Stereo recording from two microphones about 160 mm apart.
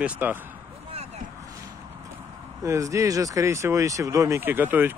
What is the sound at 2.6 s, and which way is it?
Speech, 20° right (ahead or behind).